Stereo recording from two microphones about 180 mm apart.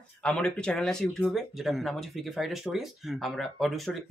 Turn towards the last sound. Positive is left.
turn(degrees=0)  # may be behind; listen again after turning